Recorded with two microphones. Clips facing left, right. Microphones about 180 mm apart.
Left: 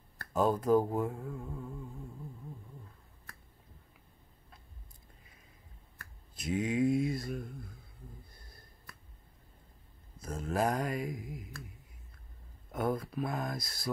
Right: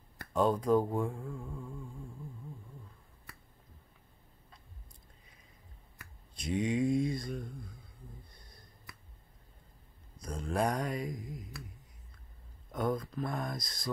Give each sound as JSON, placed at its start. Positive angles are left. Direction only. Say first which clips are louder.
{"t": 0.3, "sound": "speech", "louder": "even", "side_deg": 5}
{"t": 5.2, "sound": "a sound", "louder": "left 1 dB", "side_deg": 5}
{"t": 6.3, "sound": "speech", "louder": "even", "side_deg": 5}
{"t": 8.3, "sound": "a sound", "louder": "left 1 dB", "side_deg": 5}
{"t": 10.2, "sound": "speech", "louder": "left 1 dB", "side_deg": 5}
{"t": 12.7, "sound": "speech", "louder": "even", "side_deg": 5}